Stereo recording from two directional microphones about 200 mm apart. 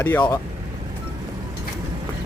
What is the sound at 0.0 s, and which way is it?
Speech, 10° left (ahead or behind).